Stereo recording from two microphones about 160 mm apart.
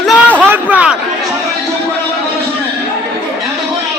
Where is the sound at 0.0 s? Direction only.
10° left (ahead or behind).